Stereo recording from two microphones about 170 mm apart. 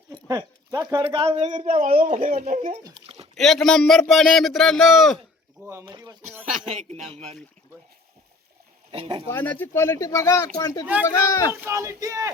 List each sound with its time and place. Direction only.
0.3 s a sound: 20° right (ahead or behind)
1.0 s speech: 35° right (ahead or behind)
3.3 s a man's voice: centre (ahead or behind)
5.8 s a sound: 25° right (ahead or behind)
6.7 s speech: 40° right (ahead or behind)
8.9 s speech: 35° right (ahead or behind)
9.3 s speech: 10° left (ahead or behind)
11.6 s speech: 15° right (ahead or behind)